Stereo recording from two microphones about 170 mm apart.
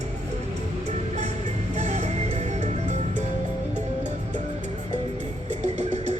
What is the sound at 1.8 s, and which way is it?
Music, 40° right (ahead or behind).